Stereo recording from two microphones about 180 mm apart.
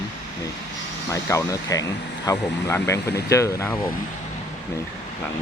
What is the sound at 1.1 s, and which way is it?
Speech, 15° left (ahead or behind).